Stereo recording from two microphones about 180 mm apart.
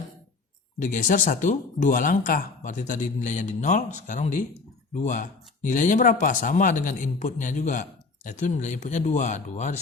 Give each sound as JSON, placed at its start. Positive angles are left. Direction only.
{"t": 0.8, "sound": "speech", "side_deg": 45}